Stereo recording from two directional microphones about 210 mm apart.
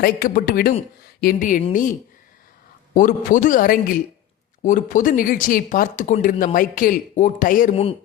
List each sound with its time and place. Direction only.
0.0 s speech: 45° left (ahead or behind)